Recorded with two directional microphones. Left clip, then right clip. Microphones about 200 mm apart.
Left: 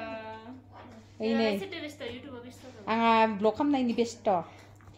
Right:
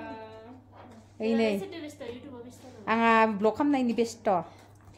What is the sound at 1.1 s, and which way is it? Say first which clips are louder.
A woman's voice: right 1 dB; 5° right (ahead or behind).